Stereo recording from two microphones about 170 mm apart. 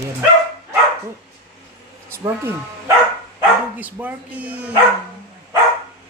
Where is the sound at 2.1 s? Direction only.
15° right (ahead or behind).